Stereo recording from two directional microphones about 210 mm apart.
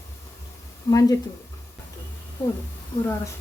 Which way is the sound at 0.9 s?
15° left (ahead or behind).